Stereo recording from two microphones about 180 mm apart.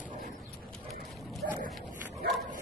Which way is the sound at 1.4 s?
60° right (ahead or behind).